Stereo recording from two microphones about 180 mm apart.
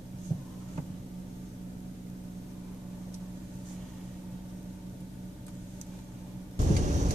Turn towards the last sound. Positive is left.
turn(degrees=-40)  # may be behind; listen again after turning